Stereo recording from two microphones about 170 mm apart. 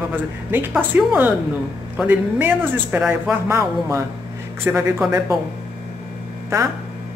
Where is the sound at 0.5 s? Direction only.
10° right (ahead or behind).